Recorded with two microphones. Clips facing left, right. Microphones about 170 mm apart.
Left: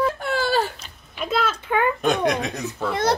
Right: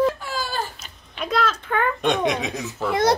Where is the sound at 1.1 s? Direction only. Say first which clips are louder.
Even; 5° left (ahead or behind).